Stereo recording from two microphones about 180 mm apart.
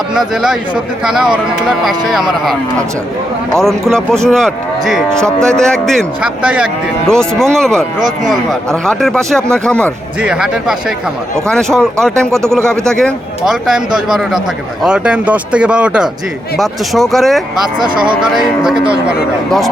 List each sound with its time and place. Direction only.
0.1 s speech: 5° right (ahead or behind)
17.7 s speech: 25° right (ahead or behind)
18.2 s speech: 5° right (ahead or behind)